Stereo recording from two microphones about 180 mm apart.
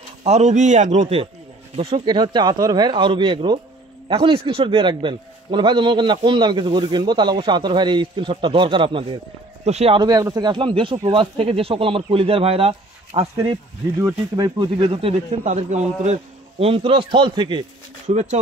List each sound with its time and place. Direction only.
0.2 s a man's voice: 40° right (ahead or behind)
10.0 s a man's voice: 20° right (ahead or behind)
15.4 s a man's voice: 40° right (ahead or behind)
18.1 s speech: 45° right (ahead or behind)